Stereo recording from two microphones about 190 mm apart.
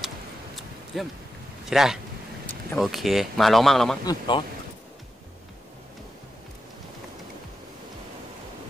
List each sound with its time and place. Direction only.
0.9 s speech: centre (ahead or behind)
4.0 s speech: 20° left (ahead or behind)